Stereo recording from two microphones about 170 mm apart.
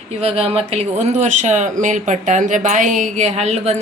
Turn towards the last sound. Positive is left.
turn(degrees=-40)  # may be behind; listen again after turning